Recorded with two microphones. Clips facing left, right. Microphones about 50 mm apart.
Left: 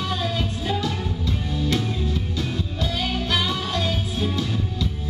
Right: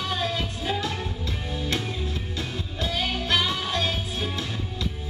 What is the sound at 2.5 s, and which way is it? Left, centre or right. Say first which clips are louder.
Music: left 2 dB; centre.